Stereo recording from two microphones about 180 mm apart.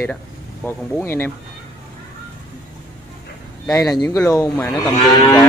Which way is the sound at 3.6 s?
15° left (ahead or behind).